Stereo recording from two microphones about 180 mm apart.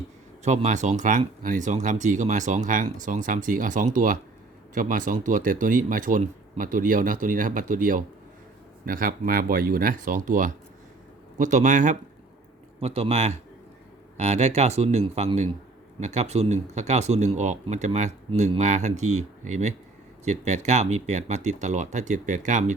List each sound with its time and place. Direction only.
0.4 s speech: 40° right (ahead or behind)
12.8 s speech: 35° right (ahead or behind)